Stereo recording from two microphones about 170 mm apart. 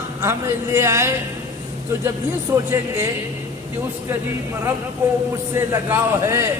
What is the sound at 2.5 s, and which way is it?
Speech, 20° right (ahead or behind).